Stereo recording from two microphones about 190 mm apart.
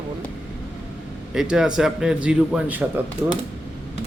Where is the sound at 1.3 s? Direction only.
5° right (ahead or behind).